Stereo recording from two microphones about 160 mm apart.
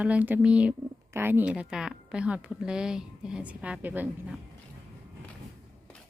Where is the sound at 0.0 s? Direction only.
10° right (ahead or behind).